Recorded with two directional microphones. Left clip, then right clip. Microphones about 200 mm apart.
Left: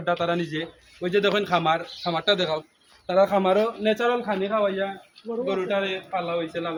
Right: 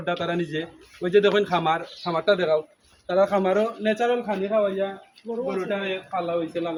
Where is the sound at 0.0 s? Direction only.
15° left (ahead or behind).